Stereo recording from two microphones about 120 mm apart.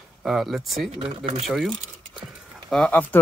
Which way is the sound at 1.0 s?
55° right (ahead or behind).